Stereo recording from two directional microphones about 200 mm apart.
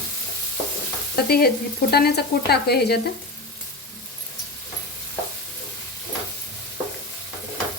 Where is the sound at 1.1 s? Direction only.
50° left (ahead or behind).